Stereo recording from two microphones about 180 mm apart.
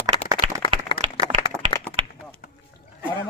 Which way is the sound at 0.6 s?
30° left (ahead or behind).